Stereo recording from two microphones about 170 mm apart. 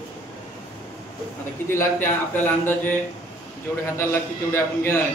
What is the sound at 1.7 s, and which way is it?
Speech, 15° left (ahead or behind).